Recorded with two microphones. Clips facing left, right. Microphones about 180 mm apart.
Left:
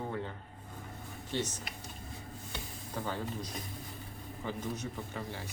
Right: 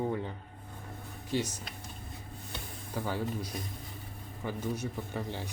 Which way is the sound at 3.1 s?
10° right (ahead or behind).